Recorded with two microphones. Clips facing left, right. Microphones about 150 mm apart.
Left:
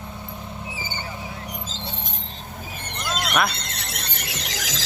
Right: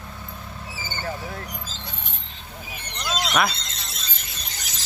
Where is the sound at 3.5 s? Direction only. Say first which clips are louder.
Left 3 dB; 65° left (ahead or behind); by 4.8 s 90° left.